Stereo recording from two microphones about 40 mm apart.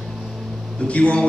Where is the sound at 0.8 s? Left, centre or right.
Left.